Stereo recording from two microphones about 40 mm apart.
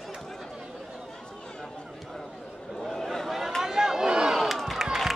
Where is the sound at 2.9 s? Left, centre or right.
Centre.